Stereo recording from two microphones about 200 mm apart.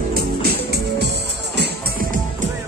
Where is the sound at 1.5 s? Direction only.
55° right (ahead or behind).